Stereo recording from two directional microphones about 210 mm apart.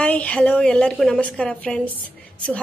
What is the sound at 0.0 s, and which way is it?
A woman's voice, 5° left (ahead or behind).